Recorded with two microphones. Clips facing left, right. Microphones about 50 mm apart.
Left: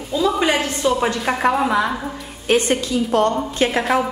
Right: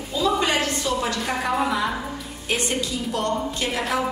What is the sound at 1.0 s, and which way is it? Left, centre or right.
Speech, left.